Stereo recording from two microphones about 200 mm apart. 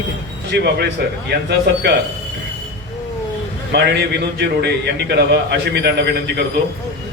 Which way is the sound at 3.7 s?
55° right (ahead or behind).